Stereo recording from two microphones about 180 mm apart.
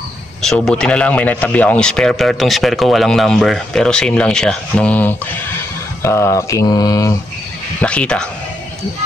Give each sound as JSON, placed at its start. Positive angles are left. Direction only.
{"t": 0.4, "sound": "a man's voice", "side_deg": 5}
{"t": 6.0, "sound": "mantra", "side_deg": 15}
{"t": 7.8, "sound": "a man's voice", "side_deg": 5}